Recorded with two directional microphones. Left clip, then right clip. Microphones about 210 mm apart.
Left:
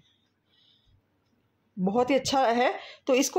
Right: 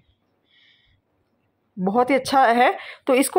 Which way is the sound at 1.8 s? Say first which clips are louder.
Right 5 dB; 15° right (ahead or behind).